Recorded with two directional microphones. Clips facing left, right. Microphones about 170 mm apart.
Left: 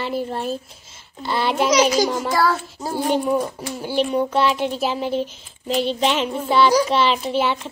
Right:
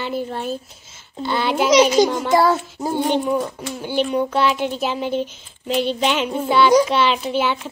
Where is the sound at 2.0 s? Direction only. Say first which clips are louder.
Right 4 dB; 25° right (ahead or behind).